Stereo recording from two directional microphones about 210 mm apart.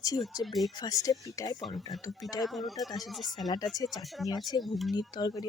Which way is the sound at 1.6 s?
Centre (ahead or behind).